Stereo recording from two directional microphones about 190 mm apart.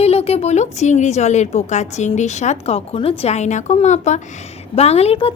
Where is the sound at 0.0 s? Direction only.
30° left (ahead or behind).